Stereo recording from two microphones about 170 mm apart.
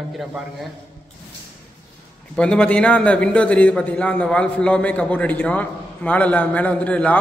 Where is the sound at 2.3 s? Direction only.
5° left (ahead or behind).